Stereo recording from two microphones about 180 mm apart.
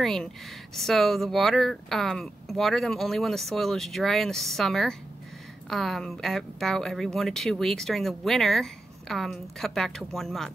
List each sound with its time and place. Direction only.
0.0 s speech: centre (ahead or behind)